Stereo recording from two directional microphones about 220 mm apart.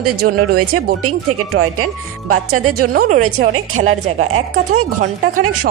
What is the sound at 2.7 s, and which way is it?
Speech, 40° right (ahead or behind).